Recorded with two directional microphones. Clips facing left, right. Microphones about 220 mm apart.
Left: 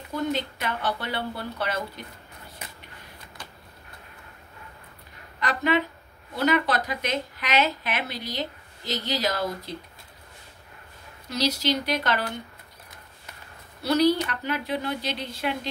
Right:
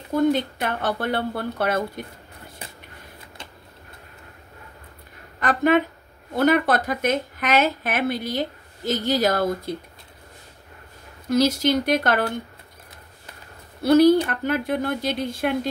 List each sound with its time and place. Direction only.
0.1 s speech: 50° right (ahead or behind)
3.4 s a sound: 25° right (ahead or behind)
5.4 s speech: 50° right (ahead or behind)
11.2 s speech: 50° right (ahead or behind)
13.8 s speech: 50° right (ahead or behind)